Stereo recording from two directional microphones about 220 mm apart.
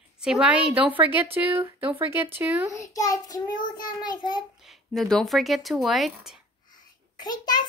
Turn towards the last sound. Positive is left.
turn(degrees=20)  # may be behind; listen again after turning